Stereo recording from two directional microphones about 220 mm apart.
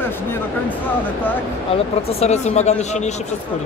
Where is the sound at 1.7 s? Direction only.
25° left (ahead or behind).